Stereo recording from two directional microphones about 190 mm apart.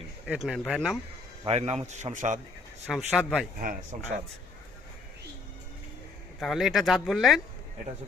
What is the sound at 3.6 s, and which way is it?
Speech, 50° right (ahead or behind).